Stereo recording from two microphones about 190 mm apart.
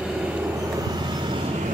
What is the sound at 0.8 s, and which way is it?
Vehicle, 20° right (ahead or behind).